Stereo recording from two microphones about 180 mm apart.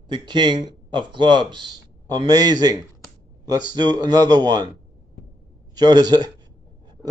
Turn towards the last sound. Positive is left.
turn(degrees=-20)  # may be behind; listen again after turning